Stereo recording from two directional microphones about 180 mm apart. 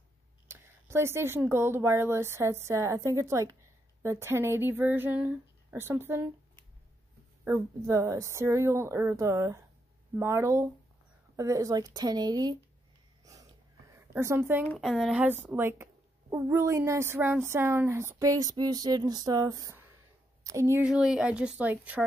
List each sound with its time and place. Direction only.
0.5 s a woman's voice: 15° right (ahead or behind)
7.4 s a woman's voice: 15° right (ahead or behind)
13.2 s wheeze: 20° right (ahead or behind)
13.9 s a woman's voice: 15° right (ahead or behind)
14.8 s a woman's voice: centre (ahead or behind)
20.8 s speech: 5° right (ahead or behind)